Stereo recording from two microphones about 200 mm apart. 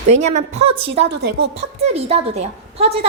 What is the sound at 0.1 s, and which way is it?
A woman's voice, 35° right (ahead or behind).